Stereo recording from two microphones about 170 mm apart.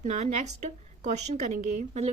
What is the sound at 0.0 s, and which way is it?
A woman's voice, 45° right (ahead or behind).